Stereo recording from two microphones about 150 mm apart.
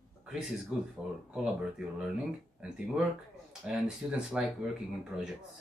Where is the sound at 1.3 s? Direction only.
5° right (ahead or behind).